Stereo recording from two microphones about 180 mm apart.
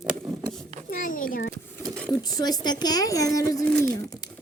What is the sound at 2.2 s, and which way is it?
A woman's voice, 20° left (ahead or behind).